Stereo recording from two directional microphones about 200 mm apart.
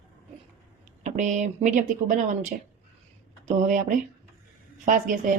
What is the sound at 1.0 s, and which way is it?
A woman's voice, 40° right (ahead or behind).